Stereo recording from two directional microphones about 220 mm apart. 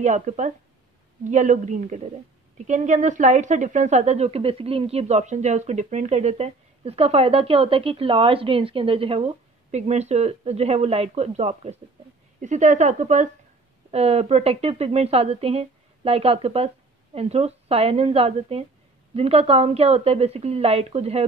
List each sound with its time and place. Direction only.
0.0 s a woman's voice: 35° right (ahead or behind)